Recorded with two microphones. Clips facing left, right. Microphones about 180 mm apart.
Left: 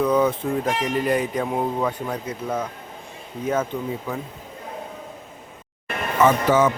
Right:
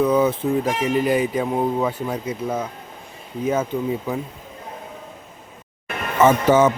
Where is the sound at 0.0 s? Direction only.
5° right (ahead or behind).